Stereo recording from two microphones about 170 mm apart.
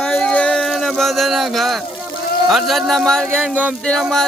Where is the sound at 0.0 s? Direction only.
5° left (ahead or behind).